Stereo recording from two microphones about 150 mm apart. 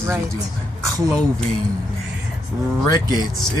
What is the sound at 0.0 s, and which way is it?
Speech, 15° right (ahead or behind).